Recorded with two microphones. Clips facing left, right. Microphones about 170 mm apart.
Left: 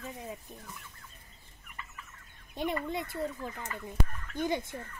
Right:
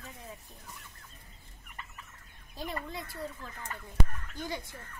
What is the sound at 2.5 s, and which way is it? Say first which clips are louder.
Speech: left 6 dB; 20° left (ahead or behind).